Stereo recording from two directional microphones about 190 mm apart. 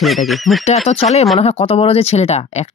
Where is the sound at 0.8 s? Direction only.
35° left (ahead or behind).